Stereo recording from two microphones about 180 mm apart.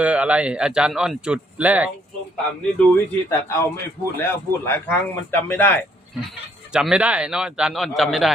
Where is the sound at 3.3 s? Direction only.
15° left (ahead or behind).